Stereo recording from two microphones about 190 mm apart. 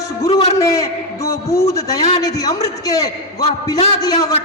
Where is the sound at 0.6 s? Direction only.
15° left (ahead or behind).